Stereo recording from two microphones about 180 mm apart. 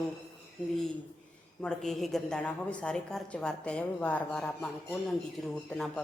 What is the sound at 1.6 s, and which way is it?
A woman's voice, centre (ahead or behind).